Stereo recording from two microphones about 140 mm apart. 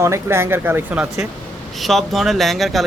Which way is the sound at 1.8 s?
Centre (ahead or behind).